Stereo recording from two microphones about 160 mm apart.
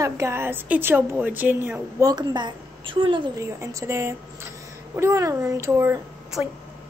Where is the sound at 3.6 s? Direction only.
15° right (ahead or behind).